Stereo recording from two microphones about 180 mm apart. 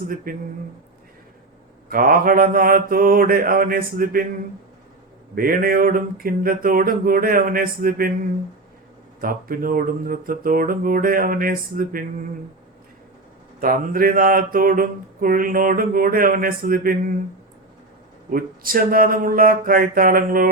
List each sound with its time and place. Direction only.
0.3 s mantra: 50° right (ahead or behind)
1.9 s mantra: 50° right (ahead or behind)
5.3 s mantra: 50° right (ahead or behind)
9.2 s mantra: 50° right (ahead or behind)
13.6 s mantra: 50° right (ahead or behind)
18.3 s mantra: 50° right (ahead or behind)